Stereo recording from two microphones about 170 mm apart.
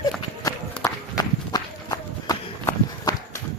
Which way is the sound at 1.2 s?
20° left (ahead or behind).